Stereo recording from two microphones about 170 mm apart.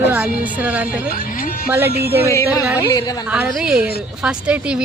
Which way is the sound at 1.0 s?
55° left (ahead or behind).